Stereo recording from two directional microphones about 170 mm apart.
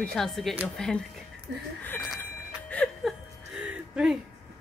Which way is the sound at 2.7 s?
5° left (ahead or behind).